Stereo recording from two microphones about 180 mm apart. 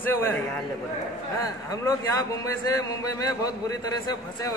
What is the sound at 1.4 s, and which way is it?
A man's voice, 20° left (ahead or behind).